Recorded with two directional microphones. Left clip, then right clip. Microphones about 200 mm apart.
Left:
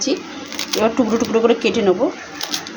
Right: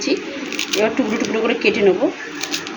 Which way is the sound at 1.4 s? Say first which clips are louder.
Right 2 dB; 35° left (ahead or behind).